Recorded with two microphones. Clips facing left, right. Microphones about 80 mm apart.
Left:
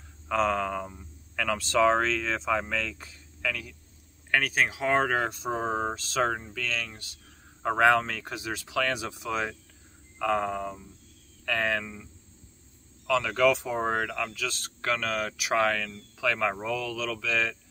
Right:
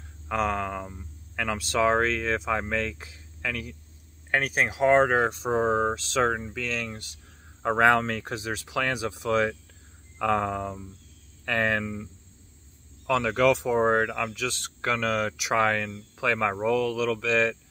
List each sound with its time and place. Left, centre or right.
0.3 s speech: centre
2.0 s speech: right
4.3 s speech: centre
7.6 s speech: right
8.4 s speech: right
9.3 s speech: right
13.0 s speech: right